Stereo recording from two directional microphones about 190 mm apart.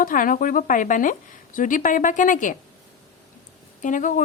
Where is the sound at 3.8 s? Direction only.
40° left (ahead or behind).